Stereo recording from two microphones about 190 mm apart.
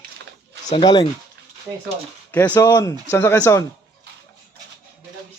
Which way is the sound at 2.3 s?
10° left (ahead or behind).